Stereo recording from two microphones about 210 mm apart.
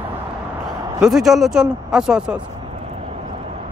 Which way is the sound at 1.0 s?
Centre (ahead or behind).